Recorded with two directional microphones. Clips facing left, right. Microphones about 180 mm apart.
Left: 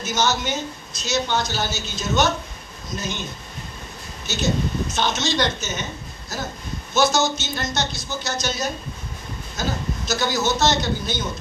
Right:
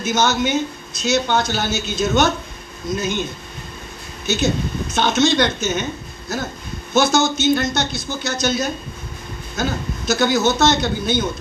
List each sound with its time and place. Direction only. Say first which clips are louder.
0.0 s speech: right 4 dB; 55° right (ahead or behind)
4.9 s speech: right 9 dB; 55° right (ahead or behind)